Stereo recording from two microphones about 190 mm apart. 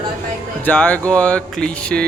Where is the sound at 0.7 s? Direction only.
5° left (ahead or behind).